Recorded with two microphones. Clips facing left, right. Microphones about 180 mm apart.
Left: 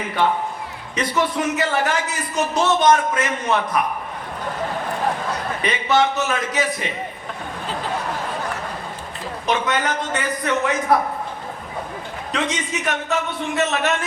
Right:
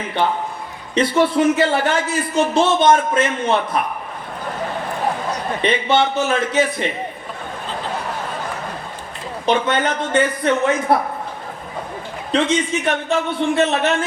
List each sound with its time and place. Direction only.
0.9 s a man's voice: 30° right (ahead or behind)
5.6 s a man's voice: 30° right (ahead or behind)
9.5 s a man's voice: 30° right (ahead or behind)
12.3 s a man's voice: 30° right (ahead or behind)